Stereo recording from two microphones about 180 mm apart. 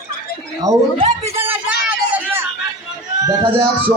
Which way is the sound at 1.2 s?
15° right (ahead or behind).